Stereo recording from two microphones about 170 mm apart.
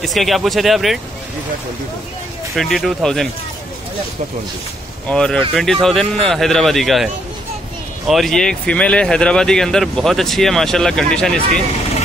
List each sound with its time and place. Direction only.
0.0 s speech: centre (ahead or behind)
2.5 s speech: centre (ahead or behind)
5.0 s speech: 5° left (ahead or behind)
8.1 s speech: centre (ahead or behind)